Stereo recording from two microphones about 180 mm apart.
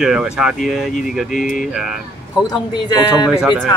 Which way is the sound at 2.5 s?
25° left (ahead or behind).